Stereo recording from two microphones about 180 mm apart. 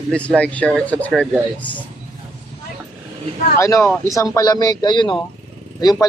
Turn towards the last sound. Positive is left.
turn(degrees=20)  # may be behind; listen again after turning